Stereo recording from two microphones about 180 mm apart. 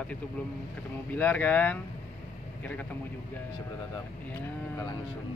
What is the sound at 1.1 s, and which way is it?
Speech, 10° left (ahead or behind).